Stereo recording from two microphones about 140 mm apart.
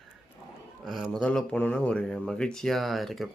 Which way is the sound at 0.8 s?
Centre (ahead or behind).